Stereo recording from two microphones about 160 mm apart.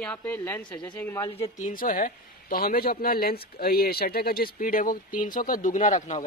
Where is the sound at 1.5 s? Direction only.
55° left (ahead or behind).